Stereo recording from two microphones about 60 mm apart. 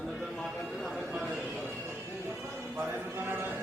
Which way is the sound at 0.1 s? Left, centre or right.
Centre.